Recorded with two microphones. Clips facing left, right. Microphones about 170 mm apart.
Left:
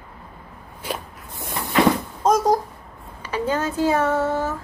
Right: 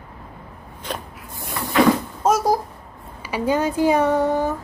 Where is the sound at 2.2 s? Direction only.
10° right (ahead or behind).